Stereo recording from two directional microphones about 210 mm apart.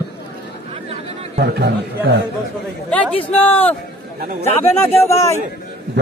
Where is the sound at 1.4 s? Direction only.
50° right (ahead or behind).